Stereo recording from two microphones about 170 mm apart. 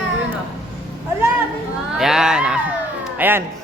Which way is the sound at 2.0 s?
5° right (ahead or behind).